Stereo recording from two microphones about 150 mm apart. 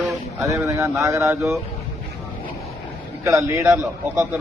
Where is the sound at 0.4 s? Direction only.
20° right (ahead or behind).